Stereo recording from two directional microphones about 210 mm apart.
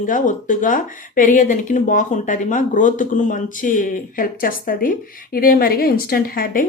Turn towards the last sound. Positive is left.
turn(degrees=40)  # may be behind; listen again after turning